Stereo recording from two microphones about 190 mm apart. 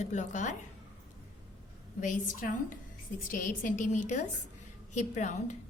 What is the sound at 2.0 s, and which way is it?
A woman's voice, 45° left (ahead or behind).